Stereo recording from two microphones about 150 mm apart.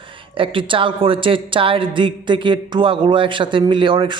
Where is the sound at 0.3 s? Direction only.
35° right (ahead or behind).